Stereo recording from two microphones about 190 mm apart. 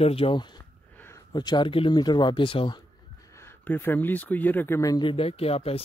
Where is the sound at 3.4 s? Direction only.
10° left (ahead or behind).